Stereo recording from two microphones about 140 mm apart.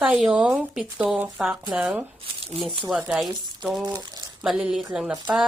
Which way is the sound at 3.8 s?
25° right (ahead or behind).